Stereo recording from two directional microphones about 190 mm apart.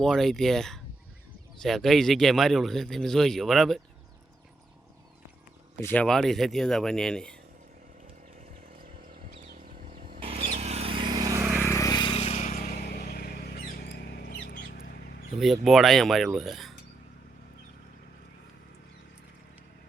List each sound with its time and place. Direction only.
0.0 s speech: centre (ahead or behind)
5.8 s speech: 10° left (ahead or behind)
9.1 s a sound: 50° right (ahead or behind)
10.2 s vehicle: 30° right (ahead or behind); by 11.7 s 10° right (ahead or behind)
11.7 s vehicle: 20° left (ahead or behind); by 12.5 s 35° left (ahead or behind)
12.8 s a sound: 55° left (ahead or behind)
15.4 s speech: centre (ahead or behind)